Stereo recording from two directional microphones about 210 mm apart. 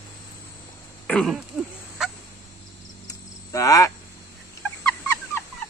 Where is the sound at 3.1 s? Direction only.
15° left (ahead or behind).